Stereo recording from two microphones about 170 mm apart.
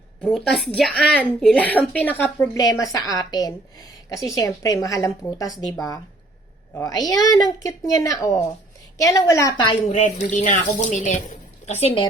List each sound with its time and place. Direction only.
0.2 s a woman's voice: centre (ahead or behind); by 5.7 s 20° left (ahead or behind)
6.7 s a woman's voice: 20° left (ahead or behind)
9.8 s a woman's voice: 45° left (ahead or behind)